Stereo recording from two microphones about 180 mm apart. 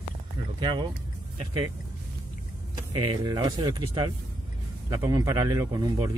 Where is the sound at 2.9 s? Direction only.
25° right (ahead or behind).